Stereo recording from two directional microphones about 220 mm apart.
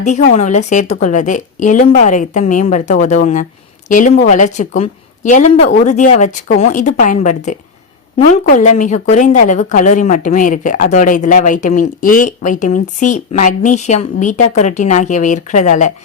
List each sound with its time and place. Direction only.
0.0 s a woman's voice: 30° left (ahead or behind)